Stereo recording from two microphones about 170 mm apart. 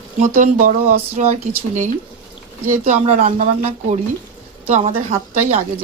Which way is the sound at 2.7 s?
45° right (ahead or behind).